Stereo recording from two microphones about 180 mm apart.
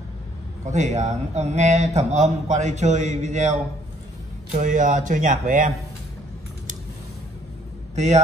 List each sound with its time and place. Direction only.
0.7 s a man's voice: 40° right (ahead or behind)
7.9 s speech: 40° right (ahead or behind)